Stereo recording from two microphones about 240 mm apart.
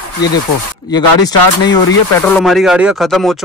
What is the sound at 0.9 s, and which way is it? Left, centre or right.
Speech, centre.